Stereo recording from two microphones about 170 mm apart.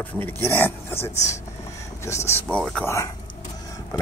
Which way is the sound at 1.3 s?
15° left (ahead or behind).